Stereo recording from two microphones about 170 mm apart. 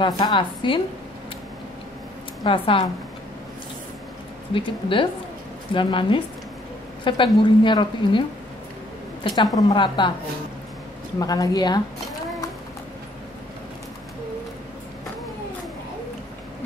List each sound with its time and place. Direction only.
0.0 s a woman's voice: 25° left (ahead or behind)
2.4 s a woman's voice: 30° left (ahead or behind)
4.6 s a woman's voice: 30° left (ahead or behind)
11.1 s a woman's voice: 20° left (ahead or behind)